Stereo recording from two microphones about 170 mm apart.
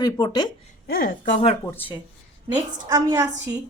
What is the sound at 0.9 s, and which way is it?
Speech, 60° left (ahead or behind).